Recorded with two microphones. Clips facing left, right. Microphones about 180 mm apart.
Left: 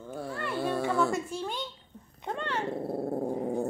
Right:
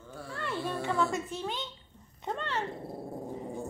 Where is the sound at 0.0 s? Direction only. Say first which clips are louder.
Left 4 dB; 55° left (ahead or behind).